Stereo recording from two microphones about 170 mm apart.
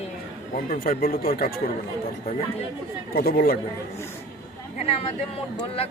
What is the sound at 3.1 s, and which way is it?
Speech, 65° left (ahead or behind).